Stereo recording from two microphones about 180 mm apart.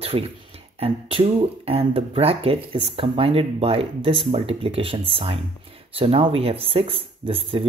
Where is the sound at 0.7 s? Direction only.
35° right (ahead or behind).